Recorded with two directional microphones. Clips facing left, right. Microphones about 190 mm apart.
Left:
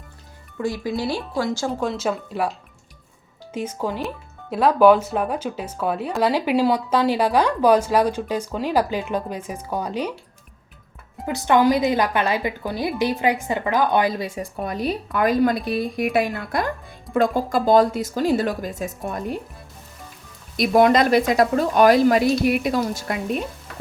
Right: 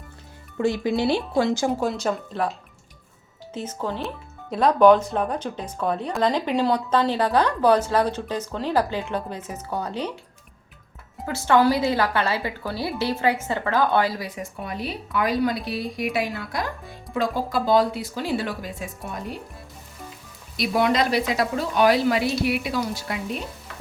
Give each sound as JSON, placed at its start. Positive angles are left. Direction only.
{"t": 0.6, "sound": "speech", "side_deg": -25}
{"t": 1.8, "sound": "speech", "side_deg": 0}
{"t": 3.5, "sound": "speech", "side_deg": 10}
{"t": 11.3, "sound": "a woman's voice", "side_deg": 15}
{"t": 20.6, "sound": "a woman's voice", "side_deg": 50}